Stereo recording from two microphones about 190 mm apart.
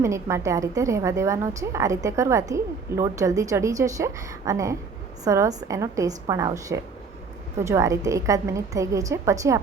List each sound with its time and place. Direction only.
0.0 s a woman's voice: 15° right (ahead or behind)